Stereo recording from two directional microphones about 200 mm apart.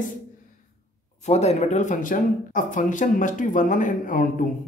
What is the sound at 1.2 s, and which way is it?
Speech, 35° left (ahead or behind).